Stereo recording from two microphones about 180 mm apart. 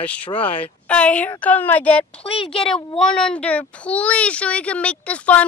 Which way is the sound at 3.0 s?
5° left (ahead or behind).